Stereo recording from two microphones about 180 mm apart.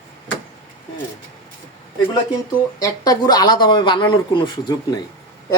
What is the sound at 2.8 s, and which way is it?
Speech, 20° left (ahead or behind).